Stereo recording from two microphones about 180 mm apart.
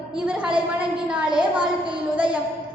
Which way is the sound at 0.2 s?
5° right (ahead or behind).